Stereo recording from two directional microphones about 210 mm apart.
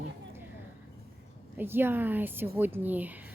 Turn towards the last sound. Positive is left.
turn(degrees=-10)  # may be behind; listen again after turning